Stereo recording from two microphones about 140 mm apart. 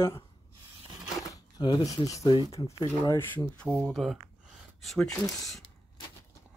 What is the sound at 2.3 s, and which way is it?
Speech, 35° left (ahead or behind).